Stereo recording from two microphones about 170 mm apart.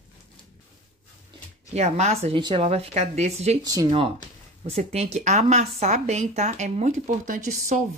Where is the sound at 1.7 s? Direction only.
40° right (ahead or behind).